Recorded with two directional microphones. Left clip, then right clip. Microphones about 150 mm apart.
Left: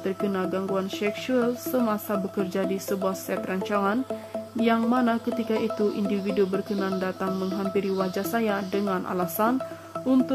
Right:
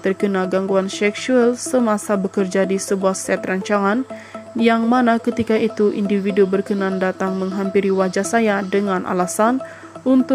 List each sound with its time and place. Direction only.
0.0 s speech: 30° right (ahead or behind)